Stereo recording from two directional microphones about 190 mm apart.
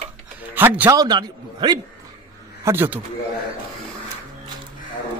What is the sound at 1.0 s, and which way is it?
Speech, 20° right (ahead or behind).